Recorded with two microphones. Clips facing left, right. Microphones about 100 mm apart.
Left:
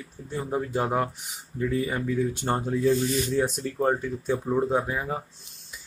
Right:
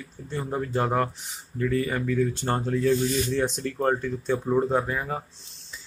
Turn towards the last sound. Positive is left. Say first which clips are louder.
# even
turn(degrees=10)  # may be behind; listen again after turning